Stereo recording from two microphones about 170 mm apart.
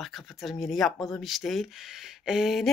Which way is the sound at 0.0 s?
Centre (ahead or behind).